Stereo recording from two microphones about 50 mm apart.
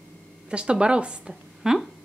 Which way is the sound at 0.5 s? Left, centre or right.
Right.